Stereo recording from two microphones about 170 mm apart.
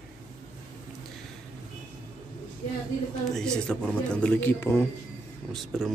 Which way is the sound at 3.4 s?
5° left (ahead or behind).